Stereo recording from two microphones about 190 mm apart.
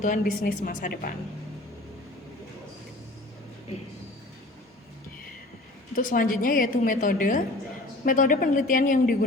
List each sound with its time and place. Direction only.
0.0 s speech: 45° left (ahead or behind)
5.9 s speech: 45° left (ahead or behind)